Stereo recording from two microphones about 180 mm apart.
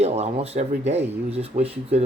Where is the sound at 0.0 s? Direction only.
35° right (ahead or behind).